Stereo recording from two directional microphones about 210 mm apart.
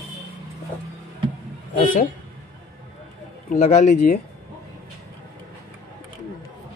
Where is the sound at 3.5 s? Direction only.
35° left (ahead or behind).